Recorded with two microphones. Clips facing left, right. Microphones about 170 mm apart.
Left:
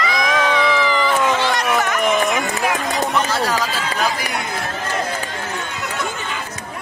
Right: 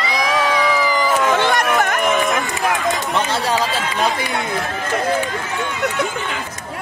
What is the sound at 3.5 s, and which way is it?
Speech, 30° right (ahead or behind).